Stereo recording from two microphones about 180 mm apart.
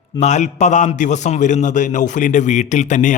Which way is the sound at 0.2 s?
40° left (ahead or behind).